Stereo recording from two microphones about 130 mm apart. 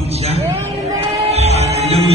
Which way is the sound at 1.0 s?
55° right (ahead or behind).